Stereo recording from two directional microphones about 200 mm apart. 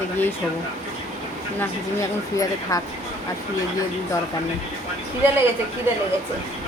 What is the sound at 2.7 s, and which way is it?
Speech, 15° left (ahead or behind).